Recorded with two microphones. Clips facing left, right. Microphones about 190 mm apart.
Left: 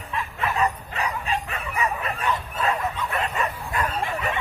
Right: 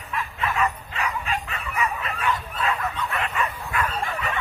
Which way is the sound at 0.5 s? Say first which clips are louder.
Left 1 dB; 35° left (ahead or behind).